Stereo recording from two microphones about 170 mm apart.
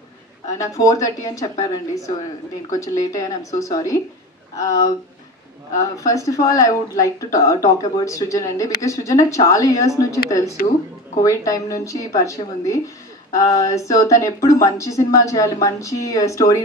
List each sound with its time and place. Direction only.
0.6 s a woman's voice: 20° left (ahead or behind)
2.7 s a woman's voice: 20° left (ahead or behind)